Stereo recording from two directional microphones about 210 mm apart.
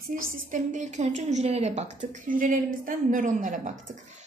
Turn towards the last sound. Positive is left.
turn(degrees=-35)  # may be behind; listen again after turning